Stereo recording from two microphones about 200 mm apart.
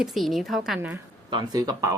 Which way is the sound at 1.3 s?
20° right (ahead or behind).